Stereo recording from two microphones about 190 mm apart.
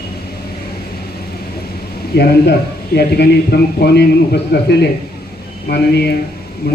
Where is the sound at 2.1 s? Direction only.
60° left (ahead or behind).